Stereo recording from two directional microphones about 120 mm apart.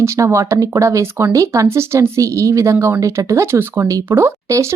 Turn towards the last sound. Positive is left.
turn(degrees=-25)  # may be behind; listen again after turning